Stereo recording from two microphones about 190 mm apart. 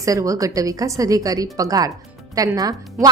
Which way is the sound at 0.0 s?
15° right (ahead or behind).